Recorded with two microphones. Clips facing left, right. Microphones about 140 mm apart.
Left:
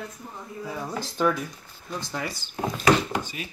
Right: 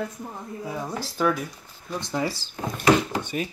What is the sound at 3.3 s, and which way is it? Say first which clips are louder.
Speech: right 9 dB; 40° right (ahead or behind).